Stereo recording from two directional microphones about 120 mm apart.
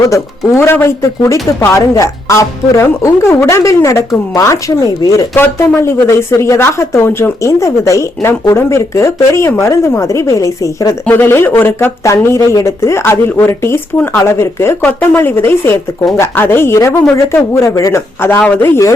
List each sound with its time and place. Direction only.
0.0 s speech: 25° left (ahead or behind)